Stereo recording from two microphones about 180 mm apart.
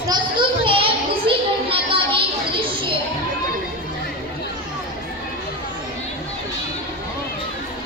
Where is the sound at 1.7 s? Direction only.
30° right (ahead or behind).